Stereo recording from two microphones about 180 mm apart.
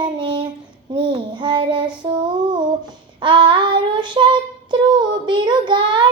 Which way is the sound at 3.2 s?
25° right (ahead or behind).